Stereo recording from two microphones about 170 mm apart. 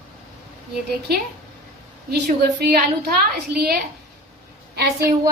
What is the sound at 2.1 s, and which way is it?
A woman's voice, 75° right (ahead or behind).